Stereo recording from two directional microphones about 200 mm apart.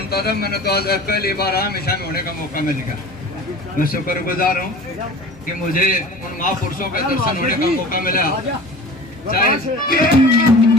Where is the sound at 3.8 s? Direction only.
45° left (ahead or behind).